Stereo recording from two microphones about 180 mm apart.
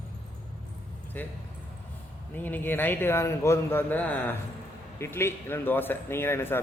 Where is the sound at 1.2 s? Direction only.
10° left (ahead or behind).